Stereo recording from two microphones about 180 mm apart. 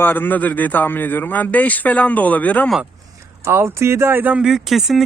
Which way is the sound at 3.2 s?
15° right (ahead or behind).